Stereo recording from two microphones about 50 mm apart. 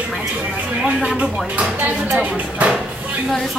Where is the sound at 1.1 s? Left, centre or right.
Right.